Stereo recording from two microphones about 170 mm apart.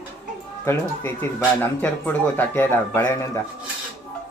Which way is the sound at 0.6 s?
10° left (ahead or behind).